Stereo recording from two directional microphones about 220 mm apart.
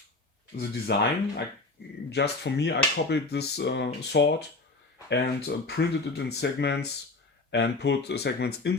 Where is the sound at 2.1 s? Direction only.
50° left (ahead or behind).